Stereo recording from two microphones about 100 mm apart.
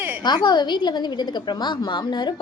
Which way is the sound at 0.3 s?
45° left (ahead or behind).